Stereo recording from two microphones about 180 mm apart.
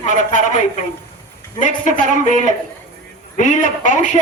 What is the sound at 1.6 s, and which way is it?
Speech, 45° left (ahead or behind).